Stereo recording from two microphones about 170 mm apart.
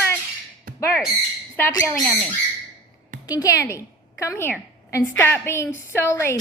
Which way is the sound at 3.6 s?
15° left (ahead or behind).